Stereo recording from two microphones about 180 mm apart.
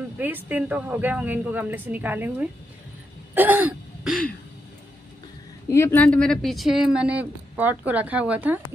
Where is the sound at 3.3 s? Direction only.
10° right (ahead or behind).